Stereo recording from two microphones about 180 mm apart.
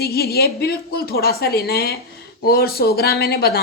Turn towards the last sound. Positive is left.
turn(degrees=60)  # may be behind; listen again after turning